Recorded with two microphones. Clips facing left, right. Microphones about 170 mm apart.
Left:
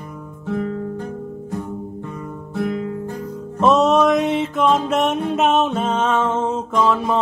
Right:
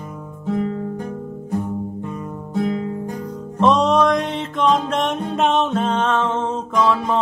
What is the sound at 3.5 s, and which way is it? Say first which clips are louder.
Music: left 1 dB; 5° left (ahead or behind).